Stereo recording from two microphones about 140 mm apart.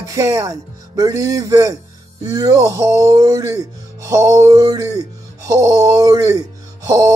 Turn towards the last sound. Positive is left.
turn(degrees=-25)  # may be behind; listen again after turning